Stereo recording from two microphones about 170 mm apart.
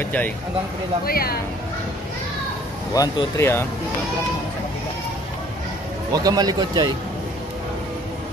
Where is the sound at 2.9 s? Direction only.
20° left (ahead or behind).